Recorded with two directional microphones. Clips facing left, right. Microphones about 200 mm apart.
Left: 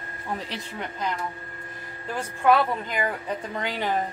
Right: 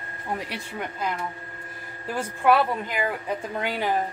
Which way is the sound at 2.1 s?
5° right (ahead or behind).